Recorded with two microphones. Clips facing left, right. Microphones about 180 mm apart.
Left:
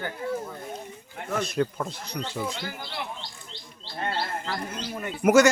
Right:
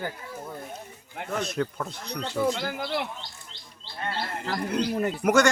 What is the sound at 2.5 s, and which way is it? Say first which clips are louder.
Speech: right 7 dB; 50° right (ahead or behind).